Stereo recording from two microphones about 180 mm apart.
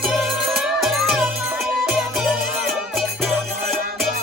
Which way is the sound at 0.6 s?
5° right (ahead or behind).